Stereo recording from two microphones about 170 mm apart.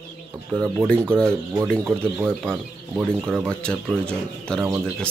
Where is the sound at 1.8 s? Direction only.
10° right (ahead or behind).